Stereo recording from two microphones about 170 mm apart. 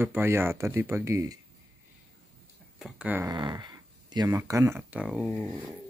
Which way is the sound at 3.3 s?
25° right (ahead or behind).